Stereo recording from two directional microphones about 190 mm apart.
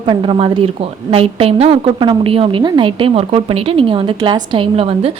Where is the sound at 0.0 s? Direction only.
25° right (ahead or behind).